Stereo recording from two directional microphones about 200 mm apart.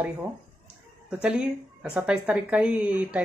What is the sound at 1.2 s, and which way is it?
Speech, 5° right (ahead or behind).